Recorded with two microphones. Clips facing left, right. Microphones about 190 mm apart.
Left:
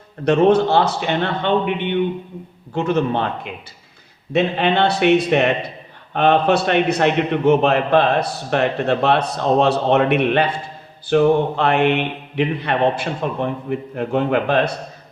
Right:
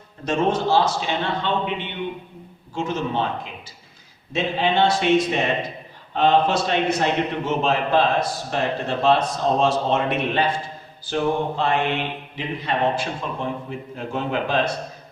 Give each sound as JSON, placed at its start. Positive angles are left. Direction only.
{"t": 0.3, "sound": "a man's voice", "side_deg": 60}